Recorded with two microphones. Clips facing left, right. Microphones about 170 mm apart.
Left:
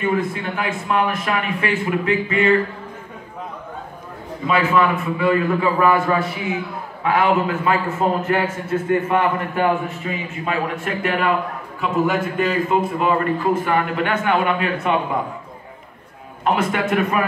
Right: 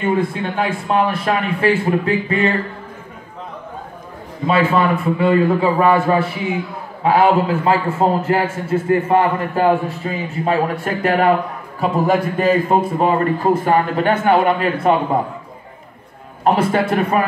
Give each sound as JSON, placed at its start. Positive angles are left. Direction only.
{"t": 0.0, "sound": "a man's voice", "side_deg": -30}
{"t": 4.5, "sound": "a man's voice", "side_deg": -30}
{"t": 16.4, "sound": "a man's voice", "side_deg": -30}